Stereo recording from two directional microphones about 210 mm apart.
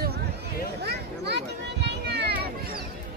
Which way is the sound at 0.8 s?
50° right (ahead or behind).